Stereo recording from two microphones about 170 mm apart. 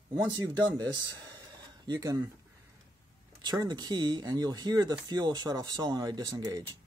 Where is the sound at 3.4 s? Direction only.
25° right (ahead or behind).